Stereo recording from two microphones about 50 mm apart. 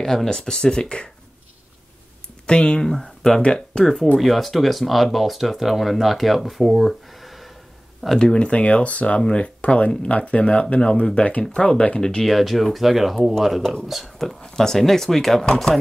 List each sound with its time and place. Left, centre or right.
0.0 s speech: centre
2.4 s speech: left
2.8 s speech: centre
3.8 s speech: centre
8.2 s speech: centre
12.0 s speech: centre
12.3 s speech: centre
15.4 s speech: centre